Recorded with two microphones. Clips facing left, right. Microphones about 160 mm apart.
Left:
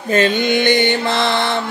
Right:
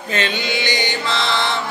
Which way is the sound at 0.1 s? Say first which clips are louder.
Left 8 dB; 45° left (ahead or behind).